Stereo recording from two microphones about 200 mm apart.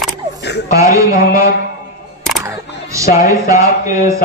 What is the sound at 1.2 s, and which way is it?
Speech, 45° left (ahead or behind).